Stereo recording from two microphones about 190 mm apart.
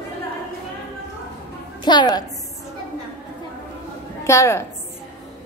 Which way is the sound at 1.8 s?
20° left (ahead or behind).